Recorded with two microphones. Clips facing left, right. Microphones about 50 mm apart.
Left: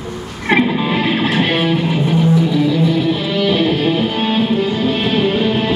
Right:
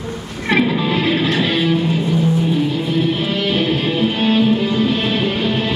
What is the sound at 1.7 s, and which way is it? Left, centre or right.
Music, left.